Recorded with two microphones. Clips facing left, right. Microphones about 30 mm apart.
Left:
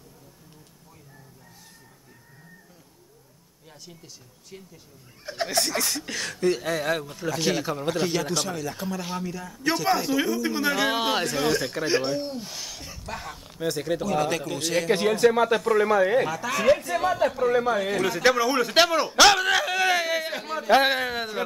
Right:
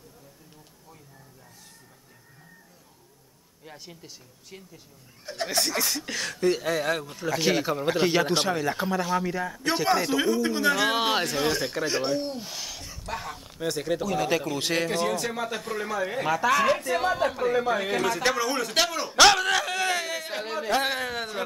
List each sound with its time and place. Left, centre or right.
3.6 s speech: centre
5.2 s speech: centre
7.9 s speech: right
9.8 s speech: centre
14.6 s speech: right
15.0 s speech: centre
16.3 s speech: centre
19.0 s speech: centre
20.3 s speech: centre
20.7 s speech: centre